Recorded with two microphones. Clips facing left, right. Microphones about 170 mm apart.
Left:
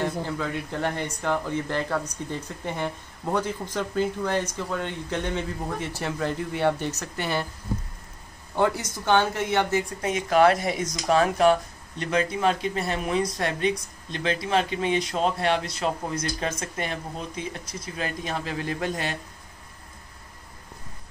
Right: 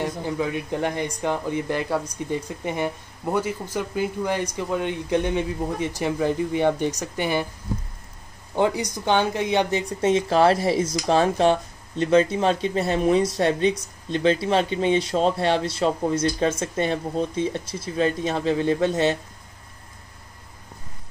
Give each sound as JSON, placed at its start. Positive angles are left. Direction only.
{"t": 0.0, "sound": "speech", "side_deg": -15}
{"t": 8.5, "sound": "speech", "side_deg": -15}